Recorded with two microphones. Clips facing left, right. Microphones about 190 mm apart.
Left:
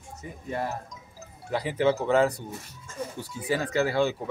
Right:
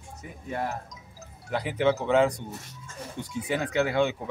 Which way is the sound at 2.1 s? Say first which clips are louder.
Even; 5° left (ahead or behind).